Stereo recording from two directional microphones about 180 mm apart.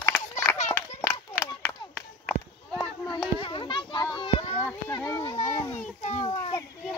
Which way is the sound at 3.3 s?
30° left (ahead or behind).